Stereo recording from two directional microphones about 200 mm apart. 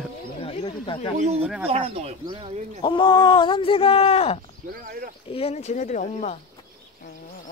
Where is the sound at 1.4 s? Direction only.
5° right (ahead or behind).